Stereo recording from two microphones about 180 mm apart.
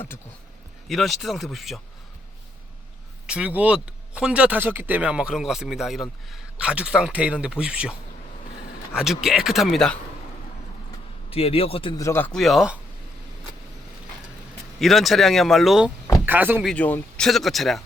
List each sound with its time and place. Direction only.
0.9 s speech: centre (ahead or behind)
3.2 s speech: 5° right (ahead or behind)
9.0 s speech: centre (ahead or behind)
11.3 s a man's voice: 35° left (ahead or behind)
11.9 s speech: 15° left (ahead or behind); by 12.8 s 5° right (ahead or behind)
14.8 s speech: centre (ahead or behind)
16.6 s speech: 5° left (ahead or behind)